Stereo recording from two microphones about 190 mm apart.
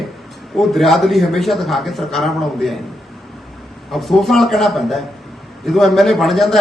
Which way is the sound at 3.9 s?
Centre (ahead or behind).